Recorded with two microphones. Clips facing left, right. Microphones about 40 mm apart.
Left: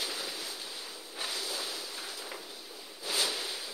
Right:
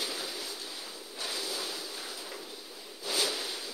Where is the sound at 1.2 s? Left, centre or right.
Centre.